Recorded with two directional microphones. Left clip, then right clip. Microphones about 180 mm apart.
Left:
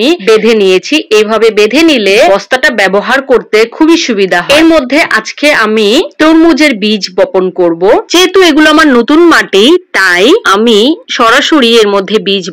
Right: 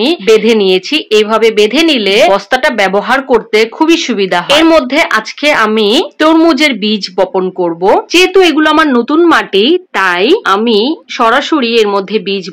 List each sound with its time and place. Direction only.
0.0 s speech: 15° left (ahead or behind)